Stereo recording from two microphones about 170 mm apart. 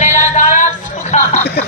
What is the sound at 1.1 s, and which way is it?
Chuckle, 40° left (ahead or behind).